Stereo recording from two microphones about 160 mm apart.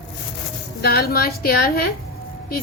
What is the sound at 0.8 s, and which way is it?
A woman's voice, 75° left (ahead or behind).